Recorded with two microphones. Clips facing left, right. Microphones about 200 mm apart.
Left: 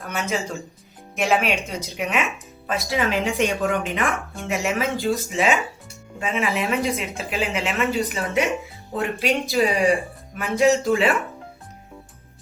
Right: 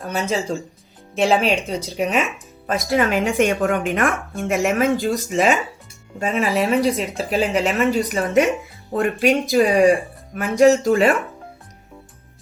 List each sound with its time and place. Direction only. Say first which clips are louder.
0.0 s speech: right 4 dB; 35° right (ahead or behind)